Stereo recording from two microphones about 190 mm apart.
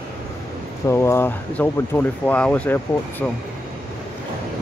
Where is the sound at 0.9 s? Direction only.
15° left (ahead or behind).